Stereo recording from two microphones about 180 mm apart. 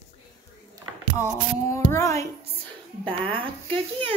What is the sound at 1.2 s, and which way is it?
Speech, 15° left (ahead or behind).